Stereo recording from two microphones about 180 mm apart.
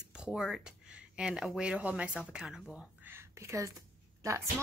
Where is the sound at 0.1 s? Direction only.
5° right (ahead or behind).